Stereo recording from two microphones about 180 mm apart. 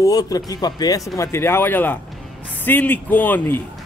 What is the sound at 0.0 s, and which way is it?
Speech, 20° left (ahead or behind).